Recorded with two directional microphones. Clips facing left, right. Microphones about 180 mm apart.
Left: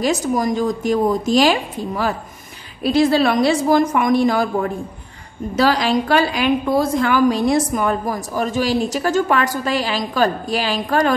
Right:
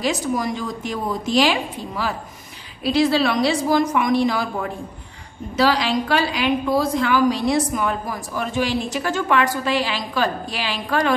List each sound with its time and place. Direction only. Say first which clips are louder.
0.0 s a woman's voice: left 4 dB; 45° left (ahead or behind)